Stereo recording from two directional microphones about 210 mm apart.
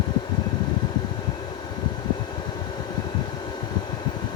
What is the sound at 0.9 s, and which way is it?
Vehicle, 20° left (ahead or behind).